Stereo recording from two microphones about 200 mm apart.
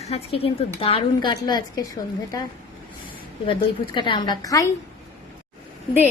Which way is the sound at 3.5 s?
25° left (ahead or behind).